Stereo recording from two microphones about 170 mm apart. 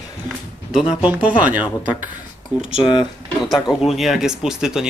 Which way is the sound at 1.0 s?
10° right (ahead or behind).